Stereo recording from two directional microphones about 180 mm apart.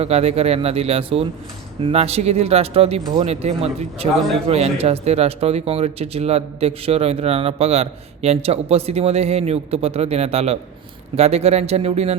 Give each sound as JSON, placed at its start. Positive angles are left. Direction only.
{"t": 0.0, "sound": "speech", "side_deg": -35}